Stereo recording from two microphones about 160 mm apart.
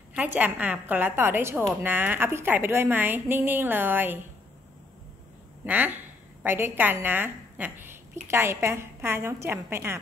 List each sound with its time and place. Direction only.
0.1 s a woman's voice: 10° right (ahead or behind)
5.7 s a woman's voice: 10° right (ahead or behind)